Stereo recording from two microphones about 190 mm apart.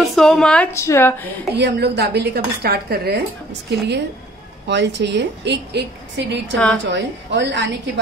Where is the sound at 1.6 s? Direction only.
60° right (ahead or behind).